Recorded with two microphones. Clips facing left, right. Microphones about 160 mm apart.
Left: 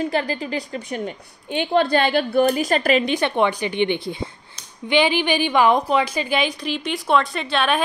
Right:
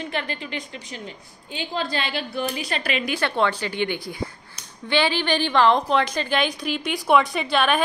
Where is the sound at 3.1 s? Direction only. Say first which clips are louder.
Left 3 dB; 20° left (ahead or behind).